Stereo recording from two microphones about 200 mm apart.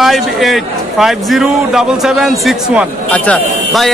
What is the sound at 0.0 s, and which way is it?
A man's voice, centre (ahead or behind).